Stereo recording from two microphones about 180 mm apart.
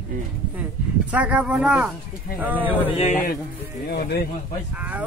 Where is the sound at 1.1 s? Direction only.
10° right (ahead or behind).